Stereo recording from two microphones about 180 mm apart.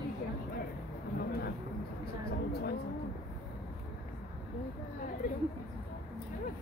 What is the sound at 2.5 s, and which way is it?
Vehicle, 60° left (ahead or behind).